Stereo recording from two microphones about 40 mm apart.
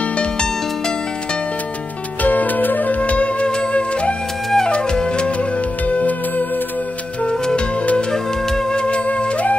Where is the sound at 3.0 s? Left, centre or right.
Left.